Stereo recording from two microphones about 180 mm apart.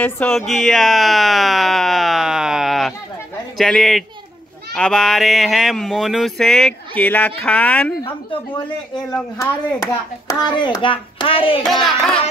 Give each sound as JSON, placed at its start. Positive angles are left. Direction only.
{"t": 0.0, "sound": "speech", "side_deg": 10}
{"t": 9.1, "sound": "a child's voice", "side_deg": 20}
{"t": 11.6, "sound": "speech", "side_deg": 0}